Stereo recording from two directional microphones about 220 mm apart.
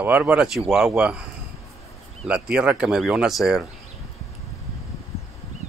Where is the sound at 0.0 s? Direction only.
5° right (ahead or behind).